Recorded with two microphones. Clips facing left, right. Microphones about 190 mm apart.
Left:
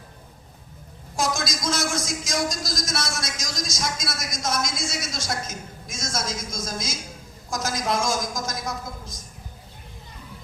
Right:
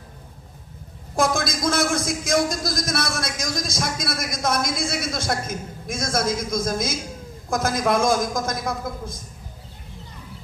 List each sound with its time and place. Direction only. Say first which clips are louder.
1.1 s a man's voice: right 5 dB; 55° right (ahead or behind)